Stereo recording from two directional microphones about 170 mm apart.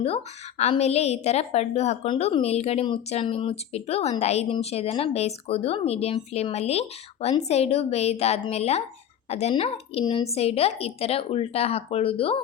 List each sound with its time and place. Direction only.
0.6 s a woman's voice: 40° left (ahead or behind)